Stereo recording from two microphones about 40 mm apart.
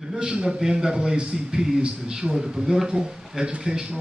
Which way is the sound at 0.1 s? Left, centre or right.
Right.